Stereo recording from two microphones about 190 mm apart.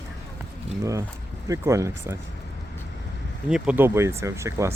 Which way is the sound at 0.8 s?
15° right (ahead or behind).